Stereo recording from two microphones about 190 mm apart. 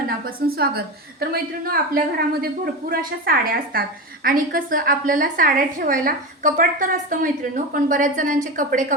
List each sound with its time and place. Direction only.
0.3 s a woman's voice: 55° right (ahead or behind)